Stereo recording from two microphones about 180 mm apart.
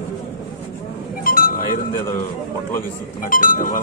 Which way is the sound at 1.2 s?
50° left (ahead or behind).